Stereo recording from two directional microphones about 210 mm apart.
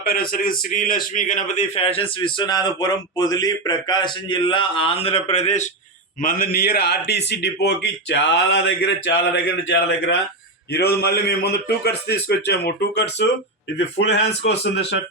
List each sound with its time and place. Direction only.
0.0 s a man's voice: 45° left (ahead or behind)
6.2 s a man's voice: 45° left (ahead or behind)